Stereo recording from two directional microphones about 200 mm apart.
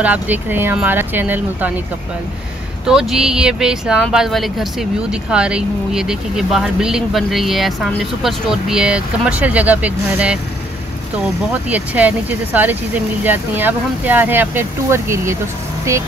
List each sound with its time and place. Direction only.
0.0 s speech: 10° right (ahead or behind)
2.9 s speech: 5° right (ahead or behind)
11.5 s speech: 5° right (ahead or behind)